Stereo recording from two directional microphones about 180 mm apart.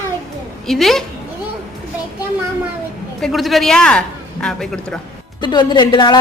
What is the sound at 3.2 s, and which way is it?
A man's voice, centre (ahead or behind).